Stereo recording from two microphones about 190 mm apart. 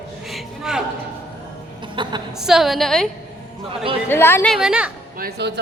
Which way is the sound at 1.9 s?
25° right (ahead or behind).